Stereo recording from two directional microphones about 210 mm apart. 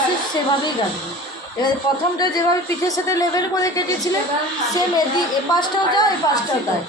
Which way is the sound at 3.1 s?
15° left (ahead or behind).